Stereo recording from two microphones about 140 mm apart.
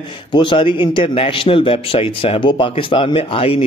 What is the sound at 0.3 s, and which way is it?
A man's voice, 35° left (ahead or behind).